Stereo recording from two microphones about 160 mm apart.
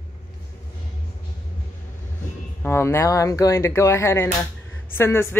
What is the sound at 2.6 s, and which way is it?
Speech, 15° left (ahead or behind).